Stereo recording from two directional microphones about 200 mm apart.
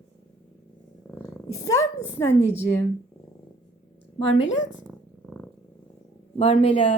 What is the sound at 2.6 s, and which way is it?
Speech, 15° left (ahead or behind).